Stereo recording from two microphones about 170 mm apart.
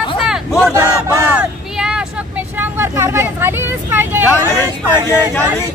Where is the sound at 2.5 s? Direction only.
15° right (ahead or behind).